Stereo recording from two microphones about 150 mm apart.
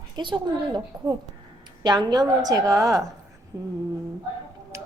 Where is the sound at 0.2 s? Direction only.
30° right (ahead or behind).